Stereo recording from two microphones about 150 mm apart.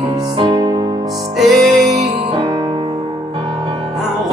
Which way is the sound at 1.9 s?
40° right (ahead or behind).